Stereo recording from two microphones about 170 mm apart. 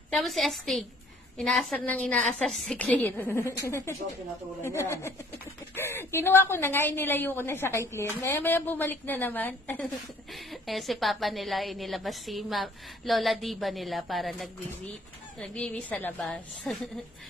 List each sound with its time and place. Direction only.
0.1 s a woman's voice: centre (ahead or behind)
10.3 s a woman's voice: centre (ahead or behind)